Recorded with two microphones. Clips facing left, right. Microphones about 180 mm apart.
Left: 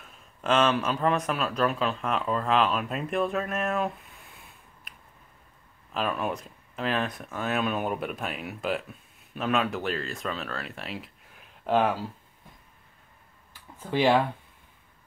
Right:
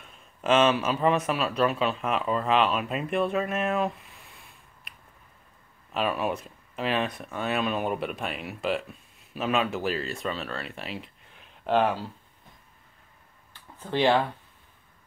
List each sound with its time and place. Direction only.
0.0 s speech: 5° right (ahead or behind)
5.9 s speech: 5° right (ahead or behind)
13.5 s a sound: 10° left (ahead or behind)